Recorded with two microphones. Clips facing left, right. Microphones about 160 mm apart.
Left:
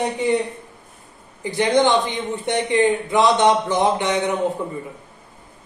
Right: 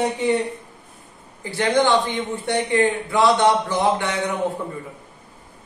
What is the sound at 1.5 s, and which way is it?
A man's voice, 20° left (ahead or behind).